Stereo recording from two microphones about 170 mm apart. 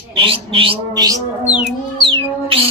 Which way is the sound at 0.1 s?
30° right (ahead or behind).